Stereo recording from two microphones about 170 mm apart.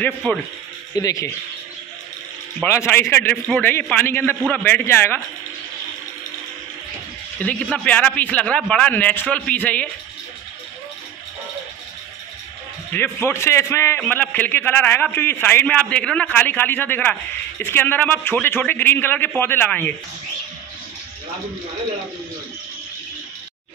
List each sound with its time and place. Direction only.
0.0 s a man's voice: 10° left (ahead or behind)
0.9 s speech: 20° left (ahead or behind)
2.6 s a man's voice: 15° left (ahead or behind)
7.3 s a man's voice: 10° left (ahead or behind)
12.9 s a man's voice: 15° left (ahead or behind)